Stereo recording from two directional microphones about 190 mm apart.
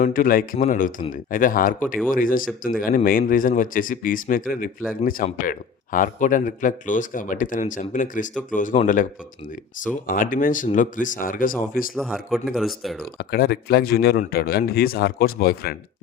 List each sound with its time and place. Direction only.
0.0 s speech: 45° left (ahead or behind)
9.8 s speech: 45° left (ahead or behind)
11.9 s speech: centre (ahead or behind)
13.1 s a man's voice: 55° left (ahead or behind)